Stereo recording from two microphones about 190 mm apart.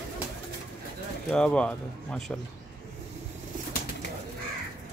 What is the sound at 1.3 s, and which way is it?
Speech, 5° left (ahead or behind).